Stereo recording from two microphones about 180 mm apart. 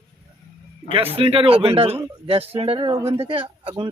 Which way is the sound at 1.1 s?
30° right (ahead or behind).